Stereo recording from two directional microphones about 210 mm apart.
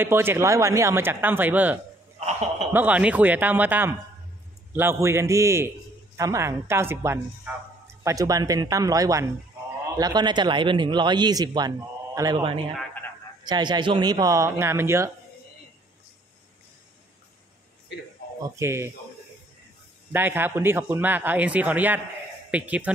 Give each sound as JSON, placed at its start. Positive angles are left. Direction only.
{"t": 0.0, "sound": "a man's voice", "side_deg": -10}
{"t": 17.9, "sound": "speech", "side_deg": 55}
{"t": 18.6, "sound": "a man's voice", "side_deg": -15}
{"t": 20.1, "sound": "a man's voice", "side_deg": -10}